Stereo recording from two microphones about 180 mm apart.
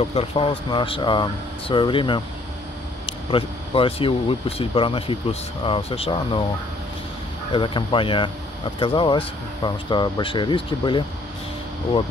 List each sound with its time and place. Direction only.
0.0 s speech: 30° left (ahead or behind)
7.5 s speech: 25° left (ahead or behind)